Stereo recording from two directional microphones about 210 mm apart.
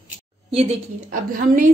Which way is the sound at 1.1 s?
40° right (ahead or behind).